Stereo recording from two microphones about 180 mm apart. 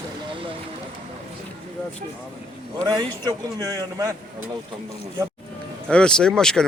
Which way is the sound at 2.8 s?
20° right (ahead or behind).